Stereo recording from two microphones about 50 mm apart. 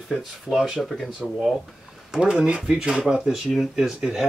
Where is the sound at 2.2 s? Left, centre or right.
Centre.